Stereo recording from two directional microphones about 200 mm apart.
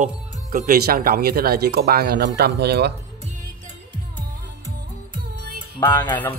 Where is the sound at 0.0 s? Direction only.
40° right (ahead or behind).